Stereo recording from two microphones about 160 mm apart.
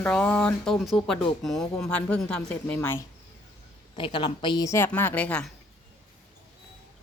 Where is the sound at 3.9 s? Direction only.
30° left (ahead or behind); by 5.5 s 10° left (ahead or behind).